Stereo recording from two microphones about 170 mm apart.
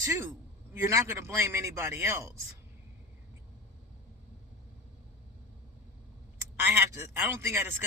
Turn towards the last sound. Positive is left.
turn(degrees=-15)  # may be behind; listen again after turning